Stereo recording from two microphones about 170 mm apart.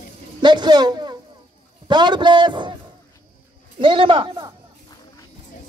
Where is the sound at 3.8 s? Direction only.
30° right (ahead or behind).